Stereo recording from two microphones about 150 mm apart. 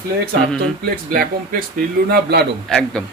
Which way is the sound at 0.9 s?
75° right (ahead or behind).